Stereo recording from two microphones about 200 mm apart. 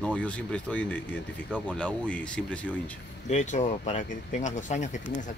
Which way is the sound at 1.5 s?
5° right (ahead or behind).